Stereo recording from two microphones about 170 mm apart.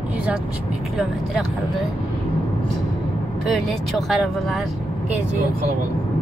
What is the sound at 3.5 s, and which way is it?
Speech, centre (ahead or behind).